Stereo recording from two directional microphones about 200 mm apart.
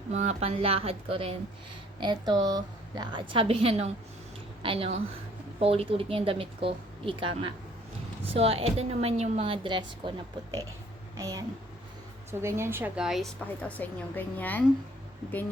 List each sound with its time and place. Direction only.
0.1 s a woman's voice: 35° right (ahead or behind)
11.2 s a woman's voice: 15° right (ahead or behind); by 14.6 s 10° left (ahead or behind)